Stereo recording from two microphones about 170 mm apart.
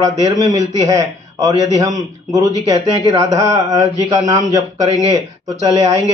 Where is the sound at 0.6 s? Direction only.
20° right (ahead or behind).